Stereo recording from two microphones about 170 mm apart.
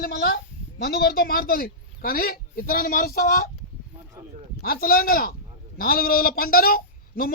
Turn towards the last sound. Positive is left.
turn(degrees=60)  # may be behind; listen again after turning